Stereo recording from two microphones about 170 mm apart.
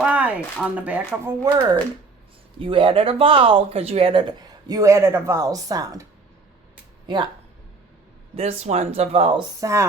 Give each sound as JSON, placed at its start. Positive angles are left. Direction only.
{"t": 0.0, "sound": "speech", "side_deg": -10}
{"t": 1.5, "sound": "speech", "side_deg": -30}
{"t": 7.1, "sound": "speech", "side_deg": -25}
{"t": 8.4, "sound": "speech", "side_deg": -40}
{"t": 9.6, "sound": "speech", "side_deg": -20}